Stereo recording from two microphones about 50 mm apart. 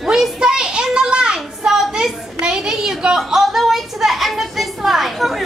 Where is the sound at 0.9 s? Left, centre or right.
Centre.